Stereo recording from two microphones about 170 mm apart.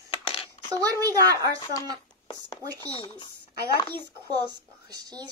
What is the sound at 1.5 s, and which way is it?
Speech, 25° left (ahead or behind).